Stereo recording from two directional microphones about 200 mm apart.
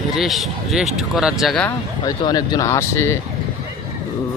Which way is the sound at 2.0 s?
20° left (ahead or behind).